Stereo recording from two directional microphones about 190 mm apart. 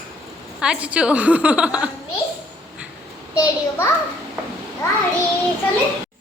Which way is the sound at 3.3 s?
20° left (ahead or behind).